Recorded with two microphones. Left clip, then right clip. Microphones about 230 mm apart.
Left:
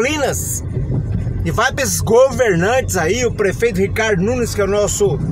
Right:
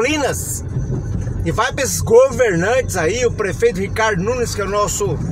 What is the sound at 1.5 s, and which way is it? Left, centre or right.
Speech, centre.